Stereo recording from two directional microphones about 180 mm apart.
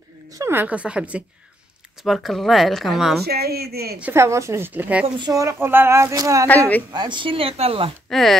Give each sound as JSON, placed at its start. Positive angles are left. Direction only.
{"t": 0.3, "sound": "speech", "side_deg": -15}
{"t": 3.3, "sound": "a woman's voice", "side_deg": -60}
{"t": 4.0, "sound": "speech", "side_deg": -15}
{"t": 5.0, "sound": "speech", "side_deg": -20}
{"t": 8.1, "sound": "speech", "side_deg": 0}